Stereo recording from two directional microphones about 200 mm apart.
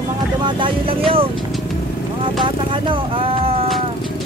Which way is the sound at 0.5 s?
25° right (ahead or behind).